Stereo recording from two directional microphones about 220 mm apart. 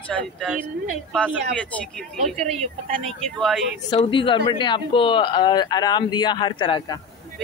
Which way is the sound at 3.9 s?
20° left (ahead or behind).